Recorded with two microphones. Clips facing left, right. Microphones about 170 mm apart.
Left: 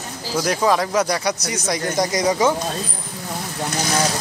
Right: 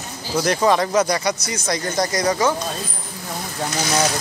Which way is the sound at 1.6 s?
15° left (ahead or behind).